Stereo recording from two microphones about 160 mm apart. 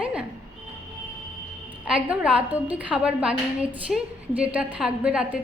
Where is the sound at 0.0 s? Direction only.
5° right (ahead or behind).